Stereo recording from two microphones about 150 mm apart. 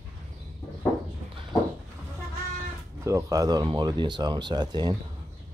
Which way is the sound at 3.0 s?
20° right (ahead or behind).